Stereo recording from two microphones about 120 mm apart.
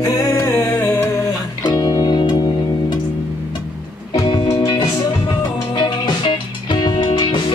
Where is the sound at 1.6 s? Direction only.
35° left (ahead or behind).